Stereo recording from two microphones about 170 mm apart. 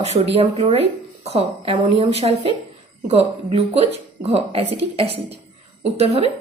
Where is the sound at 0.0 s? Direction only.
40° right (ahead or behind).